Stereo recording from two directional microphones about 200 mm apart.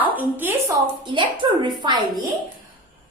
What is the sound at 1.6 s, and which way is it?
Speech, 25° right (ahead or behind).